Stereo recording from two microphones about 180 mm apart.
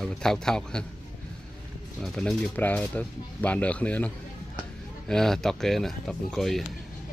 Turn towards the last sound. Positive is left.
turn(degrees=0)  # may be behind; listen again after turning